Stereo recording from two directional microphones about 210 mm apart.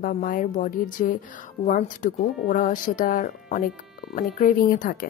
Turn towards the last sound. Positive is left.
turn(degrees=40)  # may be behind; listen again after turning